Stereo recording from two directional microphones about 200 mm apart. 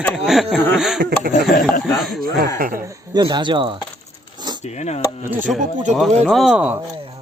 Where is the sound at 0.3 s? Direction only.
Centre (ahead or behind).